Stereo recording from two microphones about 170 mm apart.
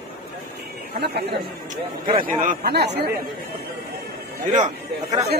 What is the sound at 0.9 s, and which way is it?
Speech, 75° right (ahead or behind).